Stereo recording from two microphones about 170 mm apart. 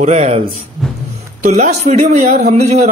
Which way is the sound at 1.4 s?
45° right (ahead or behind).